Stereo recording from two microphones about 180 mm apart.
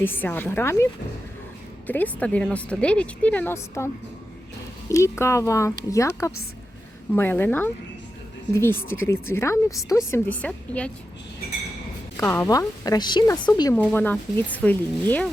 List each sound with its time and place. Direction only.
0.0 s a woman's voice: 10° left (ahead or behind)
1.9 s a woman's voice: 10° left (ahead or behind)
4.9 s a woman's voice: 15° left (ahead or behind)
12.1 s a woman's voice: 15° left (ahead or behind)